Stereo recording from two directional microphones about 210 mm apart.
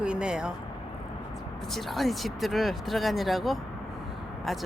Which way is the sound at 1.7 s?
Centre (ahead or behind).